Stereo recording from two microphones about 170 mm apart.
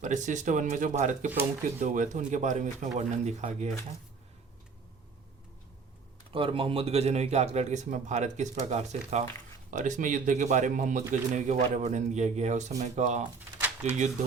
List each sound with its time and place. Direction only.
0.0 s speech: 45° right (ahead or behind)
6.3 s speech: 30° right (ahead or behind)